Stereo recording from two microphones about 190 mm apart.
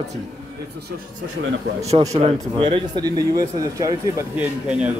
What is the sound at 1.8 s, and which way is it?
Speech, 35° right (ahead or behind).